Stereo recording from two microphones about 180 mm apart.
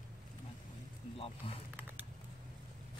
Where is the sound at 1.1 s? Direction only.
30° left (ahead or behind).